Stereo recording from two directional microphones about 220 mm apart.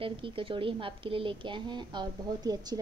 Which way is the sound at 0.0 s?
25° right (ahead or behind).